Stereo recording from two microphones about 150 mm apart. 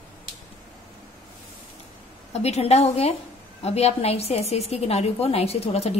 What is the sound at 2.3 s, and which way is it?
A woman's voice, 45° left (ahead or behind).